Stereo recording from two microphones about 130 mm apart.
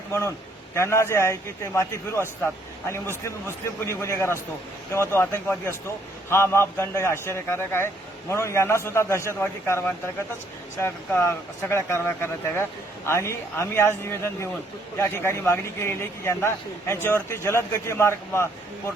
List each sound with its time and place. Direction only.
0.1 s a man's voice: 20° left (ahead or behind)
11.2 s a man's voice: 20° left (ahead or behind)